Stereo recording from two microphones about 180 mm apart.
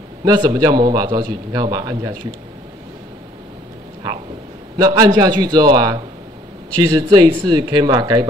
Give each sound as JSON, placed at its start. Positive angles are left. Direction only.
{"t": 0.2, "sound": "a man's voice", "side_deg": -25}
{"t": 4.7, "sound": "a man's voice", "side_deg": -20}